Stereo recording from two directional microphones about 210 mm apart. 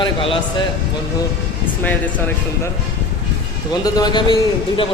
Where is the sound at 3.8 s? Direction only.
20° left (ahead or behind).